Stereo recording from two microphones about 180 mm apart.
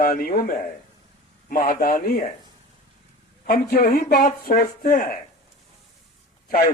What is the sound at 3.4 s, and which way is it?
Speech, 50° left (ahead or behind).